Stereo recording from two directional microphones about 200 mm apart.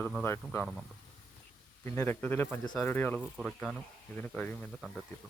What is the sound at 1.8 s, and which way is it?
Speech, 10° left (ahead or behind).